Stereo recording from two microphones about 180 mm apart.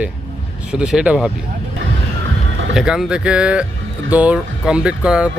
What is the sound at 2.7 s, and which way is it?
Speech, 5° right (ahead or behind).